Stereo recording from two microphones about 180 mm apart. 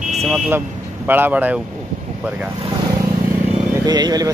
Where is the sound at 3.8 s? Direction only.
20° right (ahead or behind).